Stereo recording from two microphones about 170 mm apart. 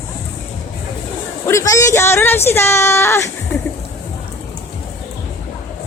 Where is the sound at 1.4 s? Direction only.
20° left (ahead or behind).